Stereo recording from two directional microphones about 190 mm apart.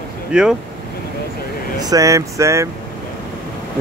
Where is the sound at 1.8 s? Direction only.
20° right (ahead or behind).